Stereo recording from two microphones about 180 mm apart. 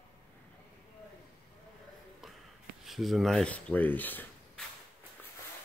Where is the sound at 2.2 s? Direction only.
Centre (ahead or behind).